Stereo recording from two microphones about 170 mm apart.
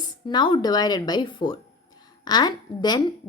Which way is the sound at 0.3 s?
25° left (ahead or behind).